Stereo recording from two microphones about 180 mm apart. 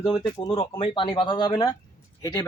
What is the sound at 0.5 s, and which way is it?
Speech, 35° left (ahead or behind).